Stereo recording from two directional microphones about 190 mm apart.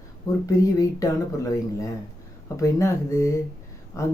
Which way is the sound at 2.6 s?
15° left (ahead or behind).